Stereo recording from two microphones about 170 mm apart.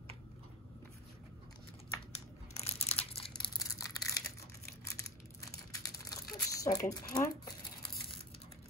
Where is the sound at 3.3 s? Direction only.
25° left (ahead or behind).